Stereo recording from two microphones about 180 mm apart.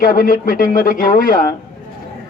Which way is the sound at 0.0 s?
50° left (ahead or behind).